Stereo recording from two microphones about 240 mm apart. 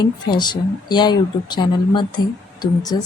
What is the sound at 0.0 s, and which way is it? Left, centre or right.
A woman's voice, centre.